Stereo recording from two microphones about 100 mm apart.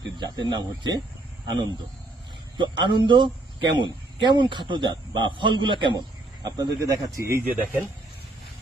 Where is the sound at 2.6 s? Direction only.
50° right (ahead or behind).